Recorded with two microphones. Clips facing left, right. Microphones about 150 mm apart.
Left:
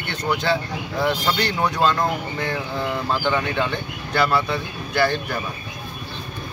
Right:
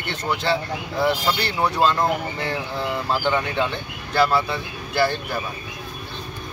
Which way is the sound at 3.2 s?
5° right (ahead or behind).